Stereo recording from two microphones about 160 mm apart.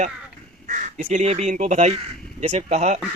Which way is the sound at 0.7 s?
50° right (ahead or behind).